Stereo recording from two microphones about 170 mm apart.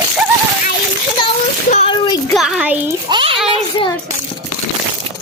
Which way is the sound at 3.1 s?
25° right (ahead or behind).